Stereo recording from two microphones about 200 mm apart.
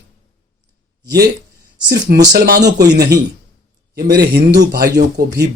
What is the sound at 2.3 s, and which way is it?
Speech, 55° right (ahead or behind).